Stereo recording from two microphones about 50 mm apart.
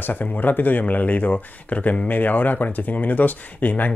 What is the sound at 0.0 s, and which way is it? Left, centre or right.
Speech, left.